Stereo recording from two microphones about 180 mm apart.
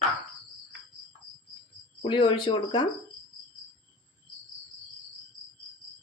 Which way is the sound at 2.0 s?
30° left (ahead or behind).